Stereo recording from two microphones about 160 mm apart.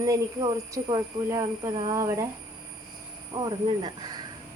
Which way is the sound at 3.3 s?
25° right (ahead or behind).